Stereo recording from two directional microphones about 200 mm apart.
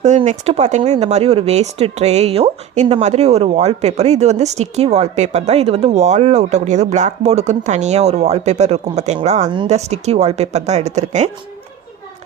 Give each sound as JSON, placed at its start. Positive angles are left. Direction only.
{"t": 0.0, "sound": "speech", "side_deg": -35}